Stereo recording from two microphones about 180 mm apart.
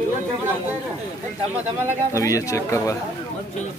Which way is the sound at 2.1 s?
15° left (ahead or behind).